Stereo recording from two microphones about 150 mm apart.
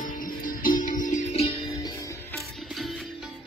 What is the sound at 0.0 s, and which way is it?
Music, 70° left (ahead or behind).